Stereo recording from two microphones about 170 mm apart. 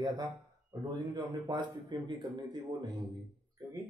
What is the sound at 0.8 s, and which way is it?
A man's voice, 25° right (ahead or behind).